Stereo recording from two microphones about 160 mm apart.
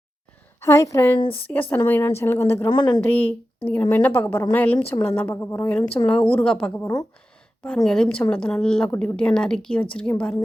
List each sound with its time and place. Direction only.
0.6 s a woman's voice: 15° left (ahead or behind)
1.2 s speech: 35° left (ahead or behind)
1.7 s a woman's voice: 10° left (ahead or behind)
2.6 s a woman's voice: 25° left (ahead or behind)
3.0 s a woman's voice: 10° left (ahead or behind)
7.9 s a woman's voice: 5° left (ahead or behind)